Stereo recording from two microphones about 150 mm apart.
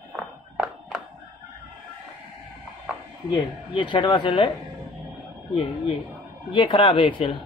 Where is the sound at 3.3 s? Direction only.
30° left (ahead or behind).